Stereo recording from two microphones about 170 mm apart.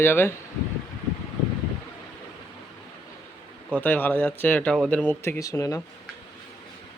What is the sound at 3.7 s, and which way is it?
Speech, 10° left (ahead or behind).